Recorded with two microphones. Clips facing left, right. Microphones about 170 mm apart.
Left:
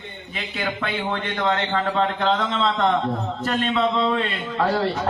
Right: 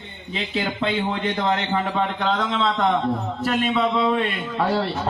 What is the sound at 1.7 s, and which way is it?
Speech, 10° right (ahead or behind).